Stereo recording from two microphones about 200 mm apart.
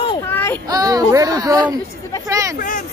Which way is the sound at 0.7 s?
20° right (ahead or behind).